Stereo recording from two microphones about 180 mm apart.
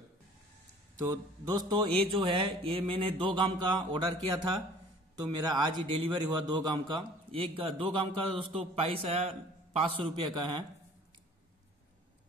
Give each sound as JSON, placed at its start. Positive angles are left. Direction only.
{"t": 0.9, "sound": "a man's voice", "side_deg": -20}